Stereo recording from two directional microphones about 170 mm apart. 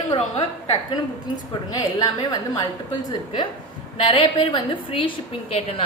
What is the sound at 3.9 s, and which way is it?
A woman's voice, 30° left (ahead or behind).